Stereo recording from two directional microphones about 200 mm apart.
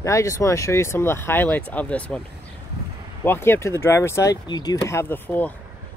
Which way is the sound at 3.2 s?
10° left (ahead or behind).